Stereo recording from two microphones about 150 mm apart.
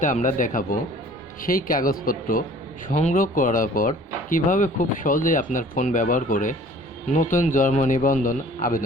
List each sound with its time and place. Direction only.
0.0 s speech: 60° left (ahead or behind)
2.9 s speech: 50° left (ahead or behind)